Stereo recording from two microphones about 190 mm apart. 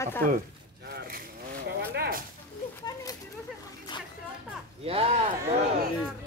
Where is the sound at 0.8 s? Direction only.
55° right (ahead or behind).